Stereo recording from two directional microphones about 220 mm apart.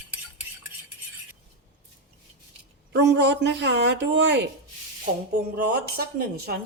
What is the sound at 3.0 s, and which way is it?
A woman's voice, 50° right (ahead or behind).